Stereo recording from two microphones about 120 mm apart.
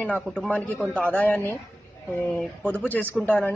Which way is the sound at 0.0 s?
10° left (ahead or behind).